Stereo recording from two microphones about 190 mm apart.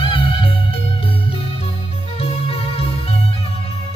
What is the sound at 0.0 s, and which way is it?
Music, 30° left (ahead or behind).